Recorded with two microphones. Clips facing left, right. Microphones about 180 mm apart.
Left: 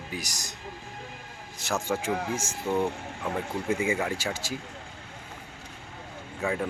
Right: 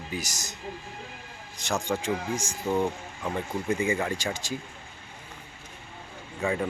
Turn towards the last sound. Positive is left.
turn(degrees=0)  # may be behind; listen again after turning